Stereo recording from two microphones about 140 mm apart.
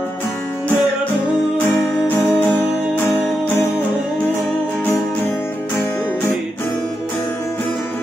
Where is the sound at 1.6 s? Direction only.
15° left (ahead or behind).